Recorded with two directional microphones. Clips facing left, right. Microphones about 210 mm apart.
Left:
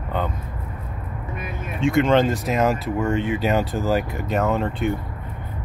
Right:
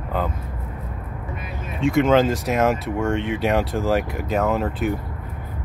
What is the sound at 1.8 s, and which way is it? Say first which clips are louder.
Speech: right 1 dB; centre (ahead or behind).